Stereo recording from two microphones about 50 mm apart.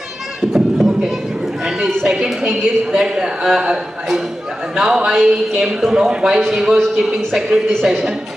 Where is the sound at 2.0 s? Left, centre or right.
Centre.